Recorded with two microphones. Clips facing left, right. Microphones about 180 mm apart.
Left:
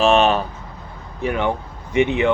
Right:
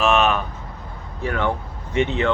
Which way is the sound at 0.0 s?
30° left (ahead or behind).